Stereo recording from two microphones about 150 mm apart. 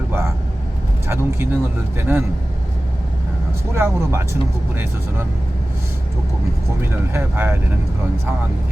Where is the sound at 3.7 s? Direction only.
15° right (ahead or behind).